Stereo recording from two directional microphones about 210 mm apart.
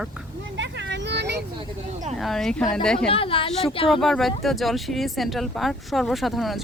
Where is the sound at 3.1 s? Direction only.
25° left (ahead or behind).